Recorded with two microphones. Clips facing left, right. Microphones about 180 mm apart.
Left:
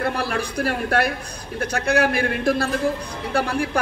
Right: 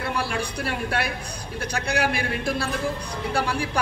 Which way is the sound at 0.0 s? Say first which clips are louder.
Left 3 dB; 45° left (ahead or behind).